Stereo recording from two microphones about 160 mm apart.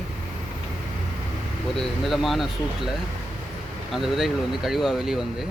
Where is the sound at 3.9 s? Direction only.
Centre (ahead or behind).